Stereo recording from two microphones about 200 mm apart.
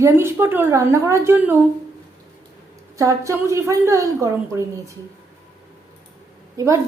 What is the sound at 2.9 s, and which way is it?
A woman's voice, 15° right (ahead or behind).